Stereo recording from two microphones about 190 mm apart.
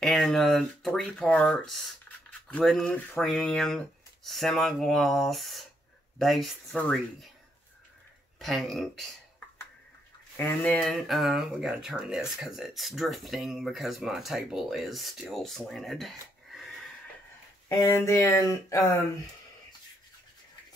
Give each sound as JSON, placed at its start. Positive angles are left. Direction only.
{"t": 0.0, "sound": "speech", "side_deg": 0}
{"t": 8.4, "sound": "speech", "side_deg": 0}
{"t": 10.3, "sound": "speech", "side_deg": 10}
{"t": 17.6, "sound": "speech", "side_deg": 15}